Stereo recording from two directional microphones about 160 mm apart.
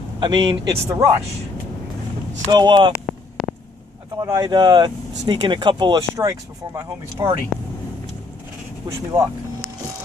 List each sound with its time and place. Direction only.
0.2 s speech: 30° right (ahead or behind)
2.5 s speech: 25° right (ahead or behind)
3.1 s a sound: 5° left (ahead or behind)
4.2 s speech: 25° right (ahead or behind)
8.8 s speech: 20° right (ahead or behind)